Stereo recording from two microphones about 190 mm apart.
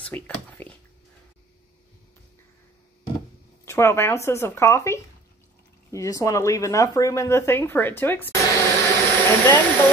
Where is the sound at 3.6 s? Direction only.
15° left (ahead or behind).